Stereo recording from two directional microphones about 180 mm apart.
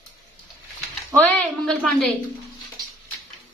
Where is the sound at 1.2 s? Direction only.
5° left (ahead or behind).